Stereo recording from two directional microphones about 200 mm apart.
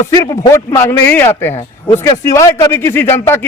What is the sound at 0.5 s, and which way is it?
A man's voice, 15° left (ahead or behind).